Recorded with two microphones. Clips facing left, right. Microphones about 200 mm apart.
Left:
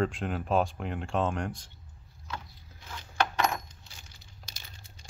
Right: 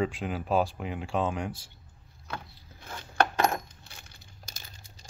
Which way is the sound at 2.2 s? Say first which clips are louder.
Right 1 dB; 60° right (ahead or behind).